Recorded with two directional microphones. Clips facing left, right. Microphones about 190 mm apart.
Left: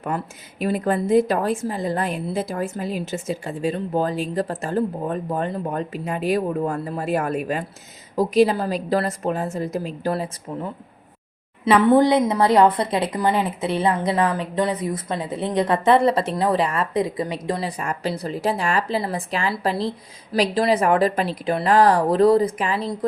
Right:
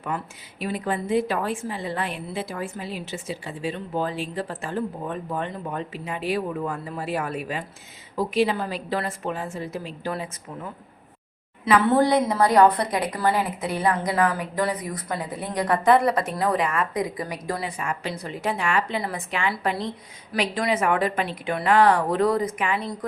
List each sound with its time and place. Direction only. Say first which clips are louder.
0.6 s a woman's voice: left 6 dB; 45° left (ahead or behind)
11.6 s a woman's voice: left 4 dB; 20° left (ahead or behind)
17.7 s a woman's voice: left 4 dB; 40° left (ahead or behind)